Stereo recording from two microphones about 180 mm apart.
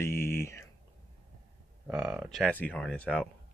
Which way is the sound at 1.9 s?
5° right (ahead or behind).